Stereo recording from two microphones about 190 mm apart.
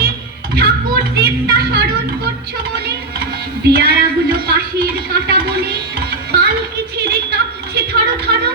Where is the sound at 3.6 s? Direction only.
55° right (ahead or behind).